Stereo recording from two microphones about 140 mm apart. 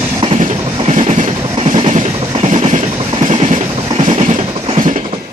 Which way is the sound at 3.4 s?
50° right (ahead or behind).